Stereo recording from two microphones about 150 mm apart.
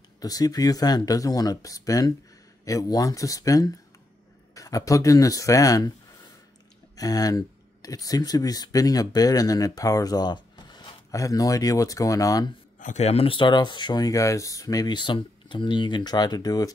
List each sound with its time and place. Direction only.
0.2 s speech: 25° left (ahead or behind)
7.0 s speech: 25° left (ahead or behind)
12.7 s speech: 55° left (ahead or behind); by 16.7 s 25° left (ahead or behind)